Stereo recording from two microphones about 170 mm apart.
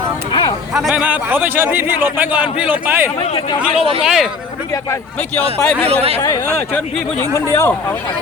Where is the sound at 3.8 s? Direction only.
35° right (ahead or behind).